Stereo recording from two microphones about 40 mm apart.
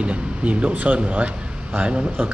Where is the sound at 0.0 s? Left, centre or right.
Right.